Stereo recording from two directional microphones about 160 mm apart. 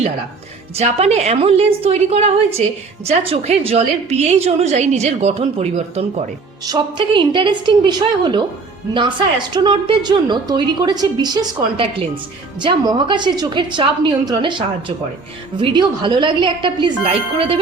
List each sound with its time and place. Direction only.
0.8 s a woman's voice: 40° right (ahead or behind)
6.7 s a woman's voice: 30° right (ahead or behind)